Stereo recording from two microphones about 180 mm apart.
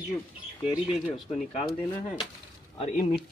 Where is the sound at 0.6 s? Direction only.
Centre (ahead or behind).